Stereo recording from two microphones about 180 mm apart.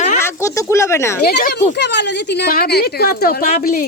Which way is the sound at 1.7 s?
75° left (ahead or behind).